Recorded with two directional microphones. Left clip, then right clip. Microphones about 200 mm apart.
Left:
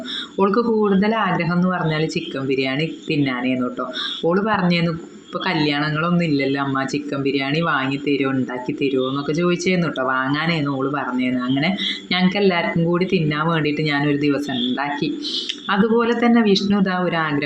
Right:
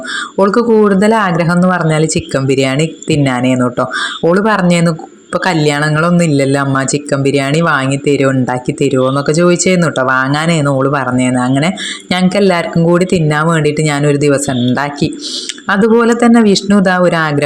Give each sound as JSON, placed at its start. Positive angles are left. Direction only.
{"t": 0.3, "sound": "speech", "side_deg": -35}